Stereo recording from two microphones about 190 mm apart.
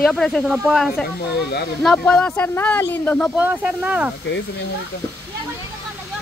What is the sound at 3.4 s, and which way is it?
Speech, 5° right (ahead or behind).